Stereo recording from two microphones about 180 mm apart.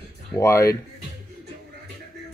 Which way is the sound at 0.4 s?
15° left (ahead or behind).